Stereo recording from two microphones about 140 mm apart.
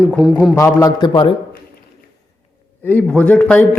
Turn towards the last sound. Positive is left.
turn(degrees=10)  # may be behind; listen again after turning